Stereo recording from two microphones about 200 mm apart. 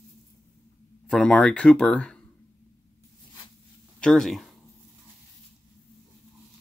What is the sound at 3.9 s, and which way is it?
Speech, 5° left (ahead or behind).